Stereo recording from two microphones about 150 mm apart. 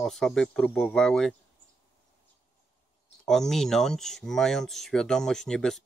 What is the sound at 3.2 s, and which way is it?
Speech, 5° left (ahead or behind).